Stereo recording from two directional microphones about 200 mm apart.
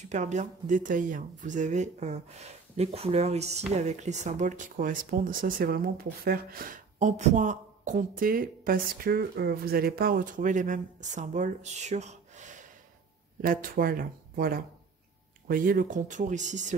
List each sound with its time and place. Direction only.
0.1 s speech: 35° right (ahead or behind)